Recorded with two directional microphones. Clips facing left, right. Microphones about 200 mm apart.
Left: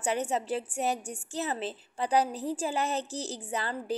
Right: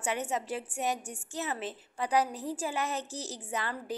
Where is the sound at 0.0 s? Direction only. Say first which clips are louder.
Left 3 dB; 30° left (ahead or behind).